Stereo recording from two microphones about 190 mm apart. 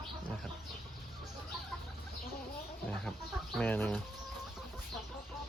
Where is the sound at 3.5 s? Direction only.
5° left (ahead or behind).